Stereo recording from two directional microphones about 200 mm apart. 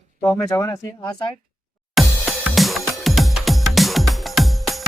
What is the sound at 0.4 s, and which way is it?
Speech, 15° left (ahead or behind).